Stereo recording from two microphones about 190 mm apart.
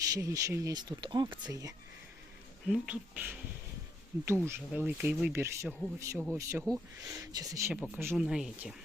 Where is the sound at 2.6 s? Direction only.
5° right (ahead or behind).